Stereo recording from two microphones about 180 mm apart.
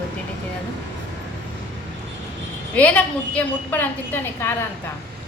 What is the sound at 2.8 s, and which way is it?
A woman's voice, 10° left (ahead or behind).